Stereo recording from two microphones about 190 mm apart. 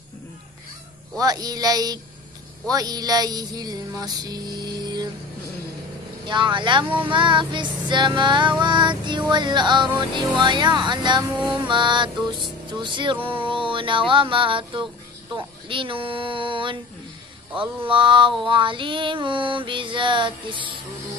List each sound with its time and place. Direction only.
1.2 s speech: 20° right (ahead or behind)
6.2 s speech: 25° right (ahead or behind)